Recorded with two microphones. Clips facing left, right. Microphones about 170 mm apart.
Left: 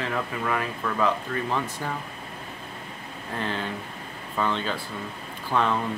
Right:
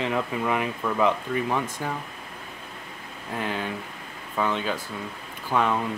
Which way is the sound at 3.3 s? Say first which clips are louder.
Right 1 dB; 10° right (ahead or behind).